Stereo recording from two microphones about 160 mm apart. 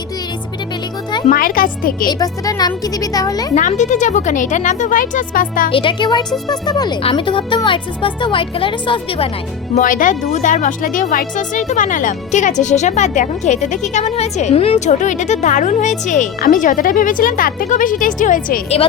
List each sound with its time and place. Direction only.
1.3 s a woman's voice: 60° left (ahead or behind)
2.0 s speech: 20° left (ahead or behind)
3.5 s speech: 50° left (ahead or behind)
5.7 s speech: 30° left (ahead or behind)
9.7 s a woman's voice: 55° left (ahead or behind)